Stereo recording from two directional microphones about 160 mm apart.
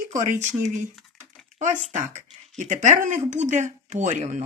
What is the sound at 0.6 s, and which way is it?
Speech, 50° right (ahead or behind).